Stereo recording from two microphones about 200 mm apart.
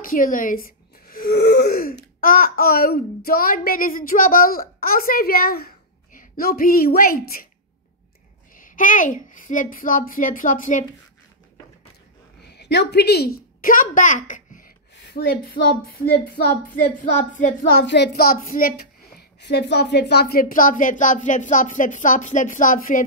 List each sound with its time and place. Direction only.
0.0 s a sound: 45° left (ahead or behind)
2.2 s a woman's voice: 45° left (ahead or behind)
8.5 s a child's voice: 40° left (ahead or behind)
12.5 s a child's voice: 55° left (ahead or behind); by 14.7 s 40° left (ahead or behind)
15.0 s a woman's voice: 50° left (ahead or behind)